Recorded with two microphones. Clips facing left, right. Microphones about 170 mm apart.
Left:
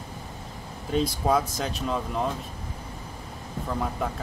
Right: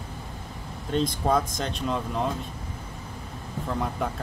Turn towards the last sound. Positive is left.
turn(degrees=0)  # may be behind; listen again after turning